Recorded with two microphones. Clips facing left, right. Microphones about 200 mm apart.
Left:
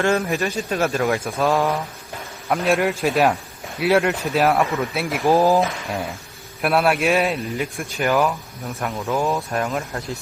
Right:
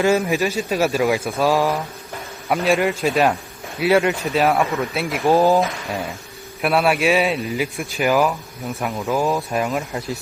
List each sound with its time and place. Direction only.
0.0 s speech: 5° right (ahead or behind)